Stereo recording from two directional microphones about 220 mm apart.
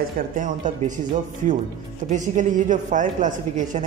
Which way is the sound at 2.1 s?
35° right (ahead or behind).